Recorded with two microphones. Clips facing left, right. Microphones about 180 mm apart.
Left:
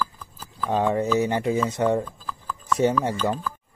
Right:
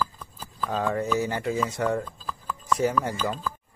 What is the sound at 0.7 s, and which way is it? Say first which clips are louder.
Speech: left 4 dB; 20° left (ahead or behind).